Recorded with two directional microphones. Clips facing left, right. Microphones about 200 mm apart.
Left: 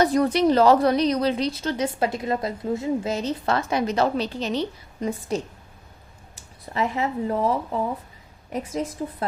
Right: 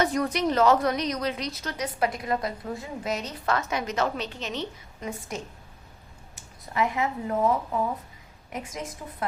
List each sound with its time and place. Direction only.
0.0 s a woman's voice: 30° left (ahead or behind)